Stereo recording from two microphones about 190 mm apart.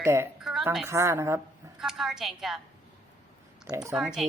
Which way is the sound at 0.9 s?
15° right (ahead or behind).